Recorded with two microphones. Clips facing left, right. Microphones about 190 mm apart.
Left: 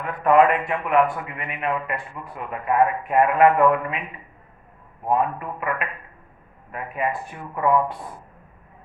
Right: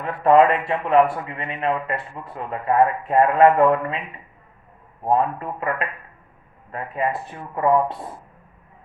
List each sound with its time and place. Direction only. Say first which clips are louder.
0.0 s a man's voice: right 2 dB; 30° right (ahead or behind)
5.0 s a man's voice: right 2 dB; 30° right (ahead or behind)